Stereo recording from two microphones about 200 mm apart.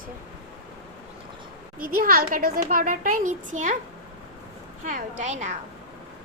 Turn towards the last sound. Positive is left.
turn(degrees=-35)  # may be behind; listen again after turning